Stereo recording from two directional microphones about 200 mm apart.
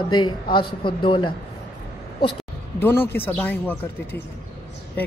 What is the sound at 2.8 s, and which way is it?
Speech, 10° left (ahead or behind).